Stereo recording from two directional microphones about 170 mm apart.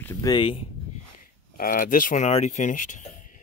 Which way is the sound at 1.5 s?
55° left (ahead or behind).